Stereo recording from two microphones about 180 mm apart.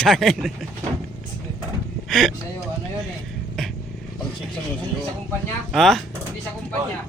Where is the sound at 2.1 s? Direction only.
Centre (ahead or behind).